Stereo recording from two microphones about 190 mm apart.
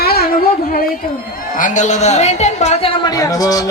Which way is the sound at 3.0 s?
20° left (ahead or behind).